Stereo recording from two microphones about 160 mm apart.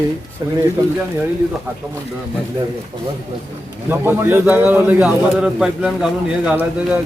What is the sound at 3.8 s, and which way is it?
A man's voice, 15° right (ahead or behind).